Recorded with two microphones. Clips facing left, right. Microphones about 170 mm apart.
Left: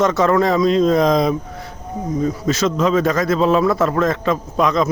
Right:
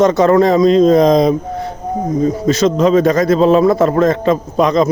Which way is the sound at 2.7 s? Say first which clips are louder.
Right 5 dB; 35° right (ahead or behind).